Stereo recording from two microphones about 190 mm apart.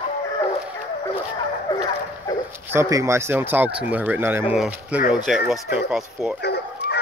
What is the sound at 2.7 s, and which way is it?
Speech, 15° right (ahead or behind).